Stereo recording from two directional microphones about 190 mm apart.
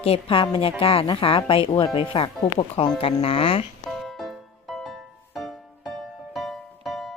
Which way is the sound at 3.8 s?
Centre (ahead or behind).